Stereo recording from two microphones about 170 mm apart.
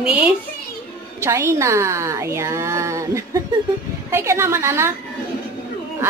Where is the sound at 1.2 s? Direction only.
15° right (ahead or behind).